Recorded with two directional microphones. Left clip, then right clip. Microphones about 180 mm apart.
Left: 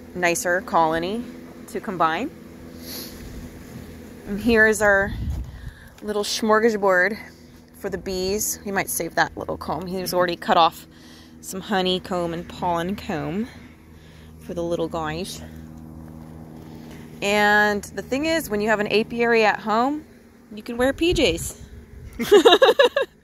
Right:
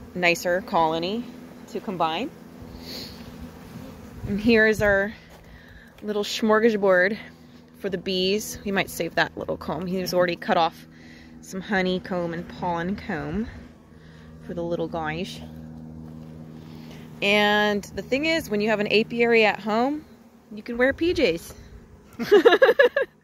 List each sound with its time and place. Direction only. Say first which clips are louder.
0.2 s speech: left 1 dB; 20° right (ahead or behind)
1.7 s speech: left 4 dB; 5° right (ahead or behind)
2.8 s vehicle: even; 15° right (ahead or behind)
4.3 s a woman's voice: left 2 dB; 20° right (ahead or behind)
8.6 s a woman's voice: right 1 dB; 50° right (ahead or behind)
9.1 s speech: left 3 dB; 25° right (ahead or behind); by 13.5 s 5° right (ahead or behind)
14.5 s speech: left 3 dB; 10° right (ahead or behind)
16.9 s speech: even; 15° right (ahead or behind)